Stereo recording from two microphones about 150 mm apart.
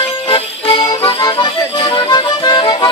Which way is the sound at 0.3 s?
40° left (ahead or behind).